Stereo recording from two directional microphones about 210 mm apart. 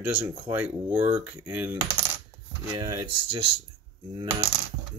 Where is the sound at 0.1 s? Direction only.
5° right (ahead or behind).